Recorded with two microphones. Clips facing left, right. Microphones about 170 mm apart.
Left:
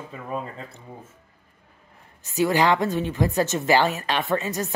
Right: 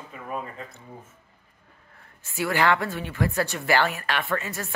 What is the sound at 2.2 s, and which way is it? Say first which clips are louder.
A woman's voice: left 3 dB; 20° left (ahead or behind).